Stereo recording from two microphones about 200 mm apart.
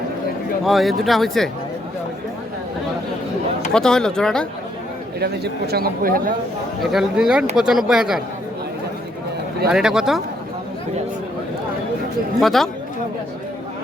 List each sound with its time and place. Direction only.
0.6 s speech: centre (ahead or behind)
3.7 s speech: 5° left (ahead or behind)
5.2 s speech: 50° right (ahead or behind)
6.9 s speech: 5° right (ahead or behind)
9.7 s speech: 5° right (ahead or behind)
12.4 s speech: centre (ahead or behind)